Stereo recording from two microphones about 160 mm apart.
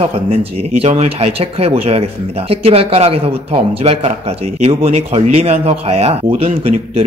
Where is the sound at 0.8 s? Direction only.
40° right (ahead or behind).